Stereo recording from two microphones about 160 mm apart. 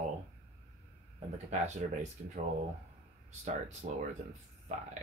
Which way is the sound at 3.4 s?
50° right (ahead or behind).